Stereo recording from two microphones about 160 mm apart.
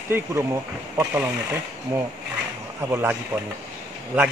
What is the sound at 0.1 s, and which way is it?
Speech, 15° right (ahead or behind).